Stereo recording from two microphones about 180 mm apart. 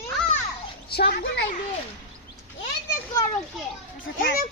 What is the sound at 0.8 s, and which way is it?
Speech, 60° left (ahead or behind).